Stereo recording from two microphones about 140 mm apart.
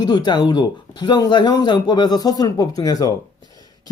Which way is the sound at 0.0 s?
30° left (ahead or behind).